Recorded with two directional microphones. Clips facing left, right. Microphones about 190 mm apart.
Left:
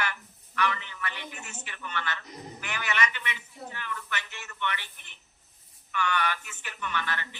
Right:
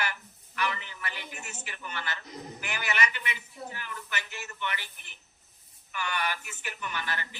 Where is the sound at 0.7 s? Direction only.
35° right (ahead or behind).